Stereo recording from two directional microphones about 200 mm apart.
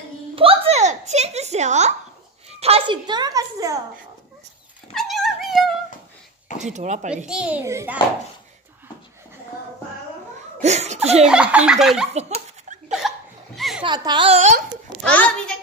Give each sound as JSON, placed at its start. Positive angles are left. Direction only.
{"t": 0.4, "sound": "a sound", "side_deg": -30}
{"t": 2.6, "sound": "a woman's voice", "side_deg": -25}
{"t": 4.9, "sound": "dog", "side_deg": 0}
{"t": 6.6, "sound": "speech", "side_deg": -35}
{"t": 7.2, "sound": "a child's voice", "side_deg": -5}
{"t": 10.6, "sound": "a child's voice", "side_deg": -35}
{"t": 11.2, "sound": "speech", "side_deg": -5}
{"t": 12.4, "sound": "laughter", "side_deg": -35}
{"t": 13.6, "sound": "a sound", "side_deg": 0}
{"t": 13.8, "sound": "a woman's voice", "side_deg": -20}
{"t": 15.0, "sound": "speech", "side_deg": 5}